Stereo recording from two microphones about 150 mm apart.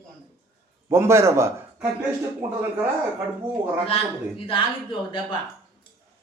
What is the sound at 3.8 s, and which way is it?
Speech, 40° left (ahead or behind).